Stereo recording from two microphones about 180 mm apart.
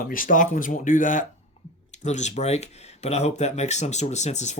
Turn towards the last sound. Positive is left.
turn(degrees=40)  # may be behind; listen again after turning